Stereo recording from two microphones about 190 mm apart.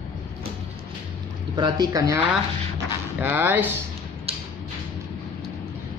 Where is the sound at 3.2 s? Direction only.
10° right (ahead or behind).